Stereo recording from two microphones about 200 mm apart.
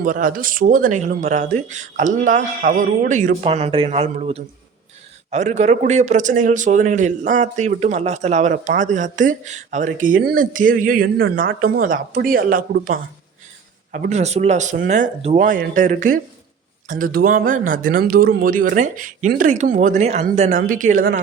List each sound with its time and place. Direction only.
0.0 s a man's voice: 40° right (ahead or behind)